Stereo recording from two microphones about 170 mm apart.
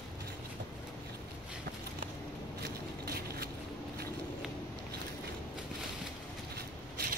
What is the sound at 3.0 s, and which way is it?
Vehicle, 65° right (ahead or behind).